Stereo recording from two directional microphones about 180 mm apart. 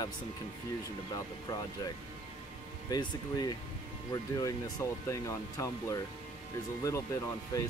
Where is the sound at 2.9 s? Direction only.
25° left (ahead or behind).